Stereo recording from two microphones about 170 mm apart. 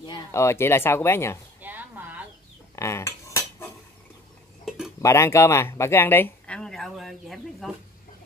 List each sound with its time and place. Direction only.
0.0 s speech: 20° left (ahead or behind)
1.6 s a sound: 10° right (ahead or behind)
2.7 s cutlery: 15° left (ahead or behind)
4.6 s cutlery: centre (ahead or behind)
5.0 s speech: 15° left (ahead or behind); by 7.7 s centre (ahead or behind)